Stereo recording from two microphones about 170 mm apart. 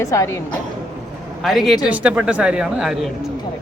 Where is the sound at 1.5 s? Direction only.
Centre (ahead or behind).